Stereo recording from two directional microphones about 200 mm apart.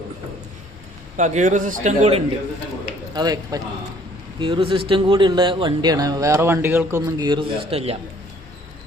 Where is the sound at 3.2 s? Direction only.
20° right (ahead or behind).